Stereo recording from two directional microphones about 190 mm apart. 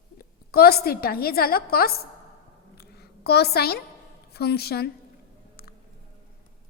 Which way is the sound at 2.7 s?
55° left (ahead or behind).